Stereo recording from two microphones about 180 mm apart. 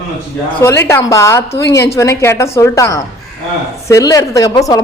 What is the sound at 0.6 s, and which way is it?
A woman's voice, 15° left (ahead or behind).